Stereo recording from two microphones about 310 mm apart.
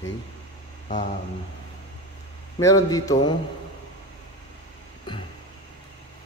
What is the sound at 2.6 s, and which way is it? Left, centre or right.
Speech, centre.